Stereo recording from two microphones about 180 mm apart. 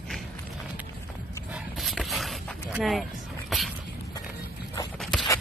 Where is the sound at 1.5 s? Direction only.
Centre (ahead or behind).